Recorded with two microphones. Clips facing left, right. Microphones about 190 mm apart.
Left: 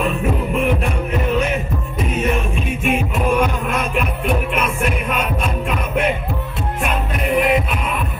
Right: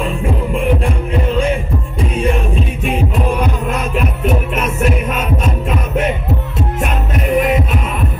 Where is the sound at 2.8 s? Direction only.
35° right (ahead or behind).